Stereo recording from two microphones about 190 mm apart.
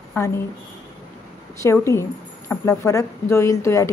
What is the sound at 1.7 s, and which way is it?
Speech, 15° left (ahead or behind).